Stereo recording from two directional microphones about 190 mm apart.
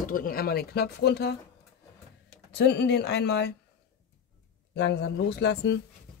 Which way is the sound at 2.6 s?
60° left (ahead or behind).